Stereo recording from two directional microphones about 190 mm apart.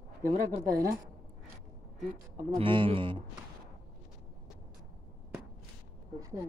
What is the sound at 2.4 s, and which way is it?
Speech, 25° right (ahead or behind).